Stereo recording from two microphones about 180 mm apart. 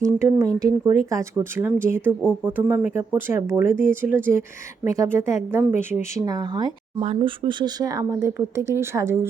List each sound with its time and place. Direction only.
0.0 s speech: 15° right (ahead or behind)
7.0 s speech: 35° right (ahead or behind); by 9.2 s 15° right (ahead or behind)